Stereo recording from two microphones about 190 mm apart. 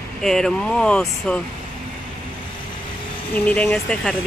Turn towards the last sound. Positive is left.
turn(degrees=5)  # may be behind; listen again after turning